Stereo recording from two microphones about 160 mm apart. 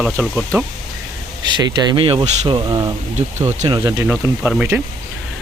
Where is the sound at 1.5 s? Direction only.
30° right (ahead or behind).